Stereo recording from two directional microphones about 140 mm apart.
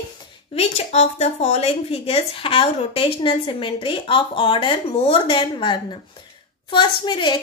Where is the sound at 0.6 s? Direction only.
50° left (ahead or behind).